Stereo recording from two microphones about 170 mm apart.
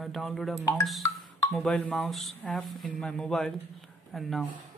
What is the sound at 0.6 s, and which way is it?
Speech, 15° left (ahead or behind).